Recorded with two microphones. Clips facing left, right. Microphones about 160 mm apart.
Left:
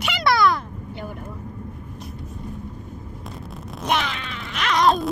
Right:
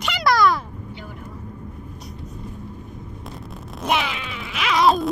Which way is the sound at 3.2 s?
Centre (ahead or behind).